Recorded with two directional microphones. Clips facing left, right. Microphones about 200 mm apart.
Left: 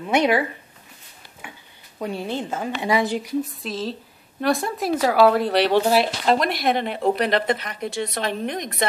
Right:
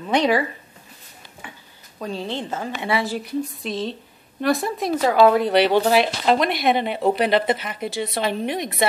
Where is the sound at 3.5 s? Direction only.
Centre (ahead or behind).